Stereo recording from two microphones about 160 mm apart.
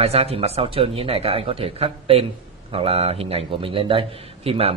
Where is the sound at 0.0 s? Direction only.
40° right (ahead or behind).